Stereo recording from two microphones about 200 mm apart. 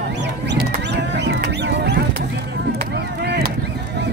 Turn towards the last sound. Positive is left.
turn(degrees=-55)  # may be behind; listen again after turning